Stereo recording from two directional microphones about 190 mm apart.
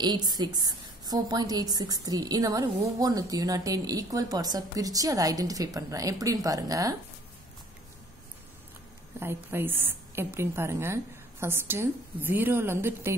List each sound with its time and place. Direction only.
0.0 s a woman's voice: 20° right (ahead or behind)
9.2 s a woman's voice: 10° right (ahead or behind)